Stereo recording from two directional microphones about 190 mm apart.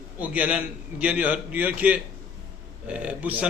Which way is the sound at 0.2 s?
5° right (ahead or behind).